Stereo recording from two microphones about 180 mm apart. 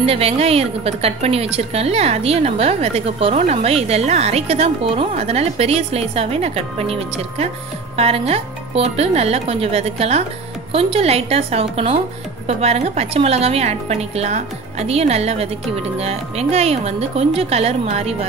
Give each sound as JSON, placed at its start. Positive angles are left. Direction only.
{"t": 0.0, "sound": "a woman's voice", "side_deg": -35}